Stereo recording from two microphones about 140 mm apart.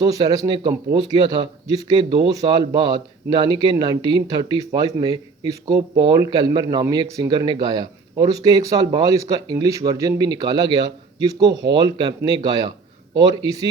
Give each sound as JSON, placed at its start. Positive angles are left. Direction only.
{"t": 0.0, "sound": "speech", "side_deg": -25}